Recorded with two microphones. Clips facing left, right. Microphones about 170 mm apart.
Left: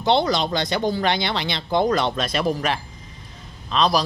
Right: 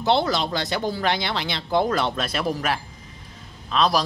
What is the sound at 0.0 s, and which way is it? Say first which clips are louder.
Speech: left 2 dB; 5° right (ahead or behind).